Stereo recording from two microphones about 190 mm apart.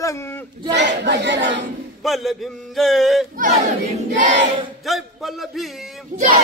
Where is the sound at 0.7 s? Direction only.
65° right (ahead or behind).